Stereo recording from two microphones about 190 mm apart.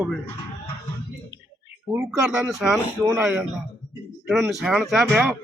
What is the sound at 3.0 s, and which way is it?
Speech, 15° right (ahead or behind).